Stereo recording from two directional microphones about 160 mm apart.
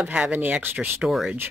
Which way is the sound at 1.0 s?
Centre (ahead or behind).